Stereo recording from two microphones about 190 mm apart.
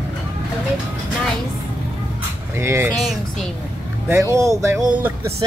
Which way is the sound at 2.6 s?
15° right (ahead or behind).